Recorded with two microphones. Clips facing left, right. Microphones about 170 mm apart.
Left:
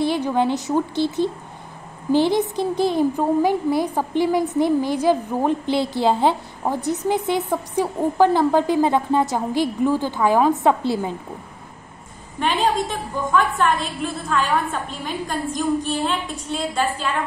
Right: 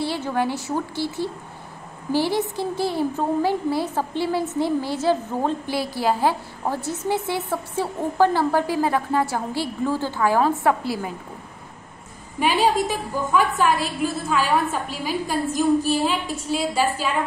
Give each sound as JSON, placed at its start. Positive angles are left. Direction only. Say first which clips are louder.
{"t": 0.0, "sound": "a woman's voice", "louder": "left 4 dB", "side_deg": 15}
{"t": 12.4, "sound": "a woman's voice", "louder": "right 1 dB", "side_deg": -5}